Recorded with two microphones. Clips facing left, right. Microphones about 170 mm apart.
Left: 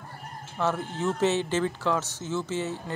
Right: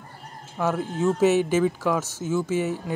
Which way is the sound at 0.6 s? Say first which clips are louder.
Right 3 dB; 10° right (ahead or behind).